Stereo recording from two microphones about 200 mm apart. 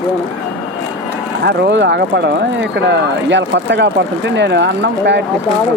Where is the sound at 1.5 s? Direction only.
60° right (ahead or behind).